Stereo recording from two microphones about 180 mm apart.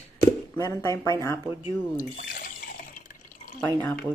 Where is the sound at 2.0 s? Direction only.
50° left (ahead or behind).